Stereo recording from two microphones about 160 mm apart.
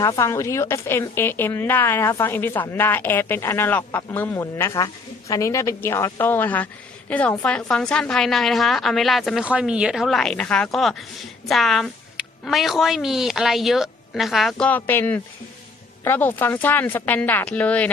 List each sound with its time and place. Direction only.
0.0 s a woman's voice: 20° left (ahead or behind)